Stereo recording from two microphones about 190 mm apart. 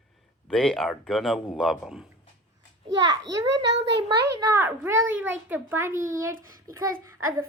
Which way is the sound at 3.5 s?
65° right (ahead or behind).